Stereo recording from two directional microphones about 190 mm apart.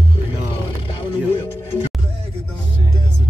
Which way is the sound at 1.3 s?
30° left (ahead or behind).